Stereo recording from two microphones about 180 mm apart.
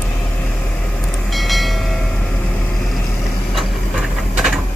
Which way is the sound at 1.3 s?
Centre (ahead or behind).